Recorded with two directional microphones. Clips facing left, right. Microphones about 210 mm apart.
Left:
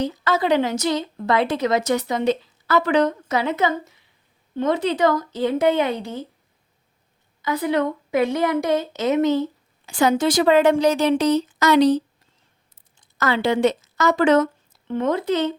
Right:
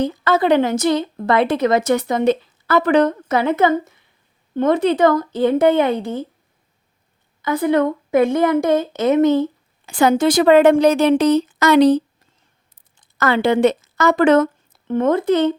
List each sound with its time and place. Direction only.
0.0 s a woman's voice: 55° right (ahead or behind)
7.4 s a woman's voice: 50° right (ahead or behind)
13.1 s a woman's voice: 55° right (ahead or behind)